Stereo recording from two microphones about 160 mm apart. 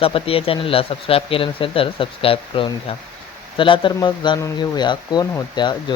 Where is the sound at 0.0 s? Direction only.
35° left (ahead or behind).